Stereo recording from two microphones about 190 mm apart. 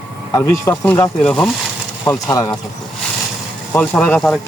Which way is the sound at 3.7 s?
5° left (ahead or behind).